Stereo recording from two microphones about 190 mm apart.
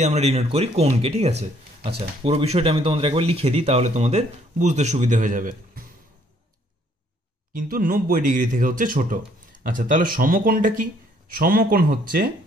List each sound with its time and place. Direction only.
0.0 s speech: 35° right (ahead or behind)
7.5 s speech: 50° right (ahead or behind)